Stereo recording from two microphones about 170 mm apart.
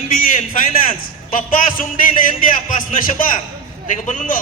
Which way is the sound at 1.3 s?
55° left (ahead or behind).